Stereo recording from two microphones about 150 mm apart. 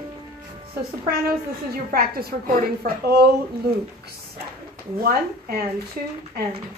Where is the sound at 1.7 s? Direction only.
80° right.